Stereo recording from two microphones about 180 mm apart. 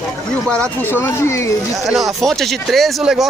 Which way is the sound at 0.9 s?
15° left (ahead or behind).